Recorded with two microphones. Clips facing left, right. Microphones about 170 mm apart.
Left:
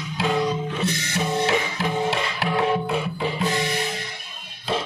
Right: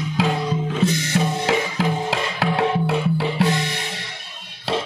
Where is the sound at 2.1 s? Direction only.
90° right.